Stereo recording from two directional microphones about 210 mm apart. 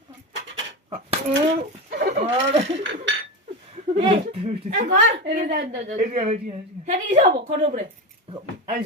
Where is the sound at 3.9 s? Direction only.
30° right (ahead or behind).